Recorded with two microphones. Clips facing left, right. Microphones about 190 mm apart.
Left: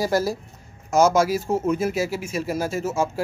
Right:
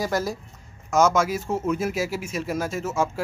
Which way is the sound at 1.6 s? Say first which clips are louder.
Left 2 dB; centre (ahead or behind).